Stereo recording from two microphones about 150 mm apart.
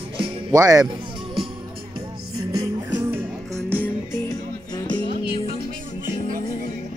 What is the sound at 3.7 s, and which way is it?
Music, 10° left (ahead or behind).